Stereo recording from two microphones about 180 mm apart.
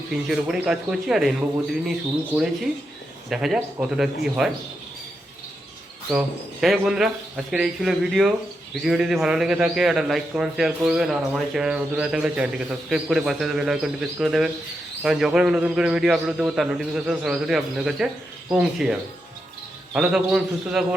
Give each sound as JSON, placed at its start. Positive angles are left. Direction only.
{"t": 0.1, "sound": "a man's voice", "side_deg": -5}
{"t": 3.2, "sound": "a man's voice", "side_deg": 0}
{"t": 6.1, "sound": "a man's voice", "side_deg": 0}